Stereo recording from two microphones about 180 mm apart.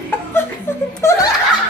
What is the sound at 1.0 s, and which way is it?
Speech, 20° left (ahead or behind).